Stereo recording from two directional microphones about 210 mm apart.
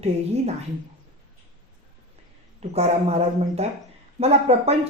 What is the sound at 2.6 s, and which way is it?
A woman's voice, 30° right (ahead or behind).